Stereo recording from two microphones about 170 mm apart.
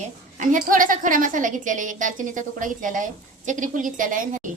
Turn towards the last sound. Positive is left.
turn(degrees=-50)  # may be behind; listen again after turning